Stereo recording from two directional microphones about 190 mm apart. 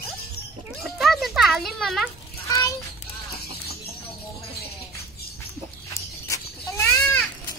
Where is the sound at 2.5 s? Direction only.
15° left (ahead or behind).